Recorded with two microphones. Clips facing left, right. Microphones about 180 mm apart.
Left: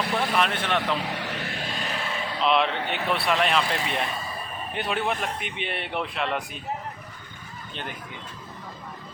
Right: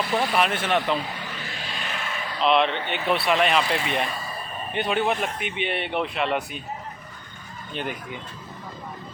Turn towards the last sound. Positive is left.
turn(degrees=-10)  # may be behind; listen again after turning